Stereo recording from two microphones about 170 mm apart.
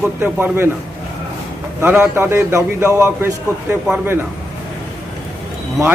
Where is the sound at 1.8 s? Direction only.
15° right (ahead or behind).